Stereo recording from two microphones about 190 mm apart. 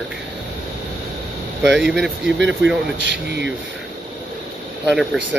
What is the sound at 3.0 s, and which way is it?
Speech, 65° right (ahead or behind).